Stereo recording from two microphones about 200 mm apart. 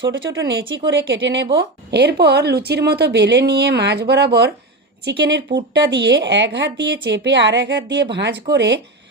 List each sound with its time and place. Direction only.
0.0 s speech: 70° right (ahead or behind)
1.5 s speech: 55° right (ahead or behind)